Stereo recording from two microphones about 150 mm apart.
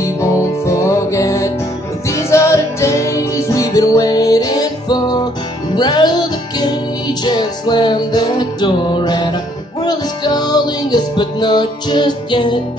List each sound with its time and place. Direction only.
0.0 s music: 20° left (ahead or behind)